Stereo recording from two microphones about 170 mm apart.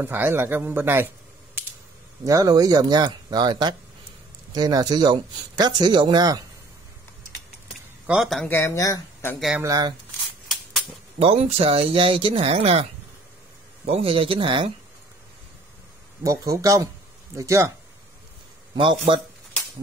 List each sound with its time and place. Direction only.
0.0 s speech: 10° right (ahead or behind)
2.2 s speech: 20° right (ahead or behind)
8.1 s speech: centre (ahead or behind)
8.5 s speech: 15° left (ahead or behind)
9.6 s speech: 20° right (ahead or behind)
11.1 s speech: 35° right (ahead or behind)
13.8 s speech: 35° right (ahead or behind)
16.3 s speech: 20° right (ahead or behind)
18.8 s speech: 30° right (ahead or behind)